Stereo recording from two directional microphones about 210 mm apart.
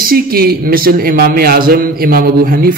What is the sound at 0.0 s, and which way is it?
A man's voice, 45° right (ahead or behind).